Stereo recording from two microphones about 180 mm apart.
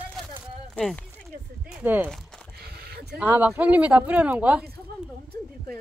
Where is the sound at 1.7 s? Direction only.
10° right (ahead or behind).